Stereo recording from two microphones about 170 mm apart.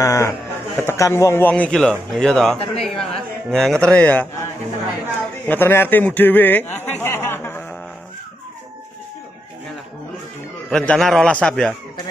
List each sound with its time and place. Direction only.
0.0 s a man's voice: 15° left (ahead or behind)
2.6 s a man's voice: 35° left (ahead or behind)
3.0 s speech: 5° left (ahead or behind)
5.5 s a man's voice: 15° left (ahead or behind)
10.7 s a man's voice: 5° left (ahead or behind)